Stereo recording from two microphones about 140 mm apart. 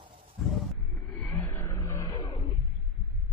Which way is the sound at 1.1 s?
15° left (ahead or behind).